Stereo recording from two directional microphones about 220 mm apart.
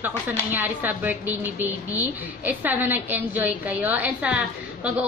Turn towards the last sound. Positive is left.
turn(degrees=-5)  # may be behind; listen again after turning